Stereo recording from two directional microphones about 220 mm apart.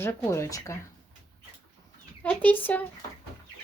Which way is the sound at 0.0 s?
10° left (ahead or behind).